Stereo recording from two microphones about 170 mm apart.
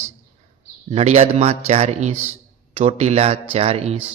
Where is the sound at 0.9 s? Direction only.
40° right (ahead or behind).